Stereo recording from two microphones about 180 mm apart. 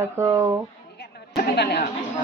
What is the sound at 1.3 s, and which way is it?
Speech, 65° left (ahead or behind).